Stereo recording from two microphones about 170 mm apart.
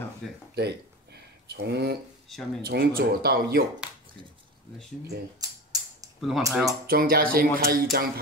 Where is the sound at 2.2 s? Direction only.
Centre (ahead or behind).